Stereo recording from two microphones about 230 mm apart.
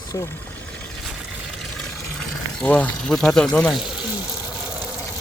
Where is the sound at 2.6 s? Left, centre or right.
Centre.